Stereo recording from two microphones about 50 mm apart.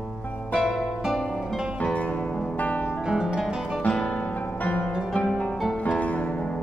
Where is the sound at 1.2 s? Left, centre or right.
Centre.